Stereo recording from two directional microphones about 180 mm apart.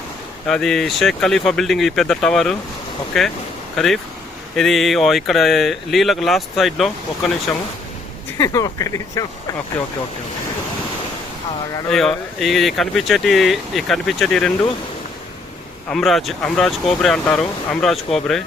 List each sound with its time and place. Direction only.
0.4 s speech: centre (ahead or behind)
8.4 s speech: 20° left (ahead or behind)
11.9 s speech: centre (ahead or behind)
15.9 s speech: centre (ahead or behind)